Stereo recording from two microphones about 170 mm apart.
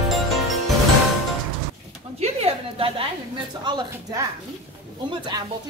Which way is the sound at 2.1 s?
35° right (ahead or behind).